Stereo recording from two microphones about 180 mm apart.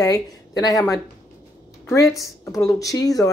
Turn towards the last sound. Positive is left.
turn(degrees=20)  # may be behind; listen again after turning